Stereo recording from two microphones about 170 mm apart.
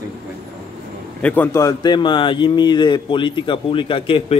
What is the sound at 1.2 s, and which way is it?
Speech, 10° left (ahead or behind).